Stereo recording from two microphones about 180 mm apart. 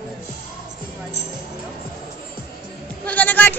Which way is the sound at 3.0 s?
10° left (ahead or behind).